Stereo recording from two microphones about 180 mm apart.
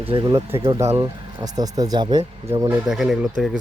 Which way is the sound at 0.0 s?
30° right (ahead or behind).